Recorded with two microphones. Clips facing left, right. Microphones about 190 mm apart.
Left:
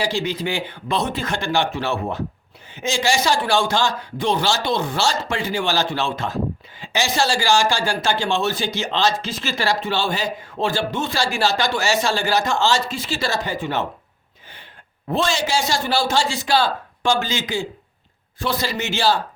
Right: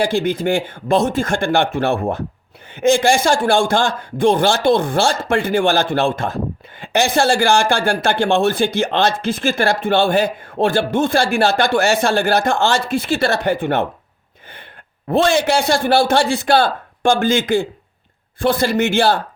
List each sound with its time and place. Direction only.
0.0 s a man's voice: 55° right (ahead or behind)
15.0 s a man's voice: 55° right (ahead or behind)